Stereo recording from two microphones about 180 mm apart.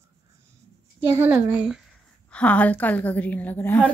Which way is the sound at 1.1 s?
10° right (ahead or behind).